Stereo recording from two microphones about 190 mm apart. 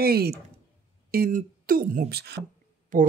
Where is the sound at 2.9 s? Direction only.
45° right (ahead or behind).